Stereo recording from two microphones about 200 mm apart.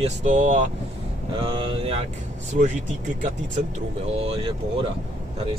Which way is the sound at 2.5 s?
40° right (ahead or behind).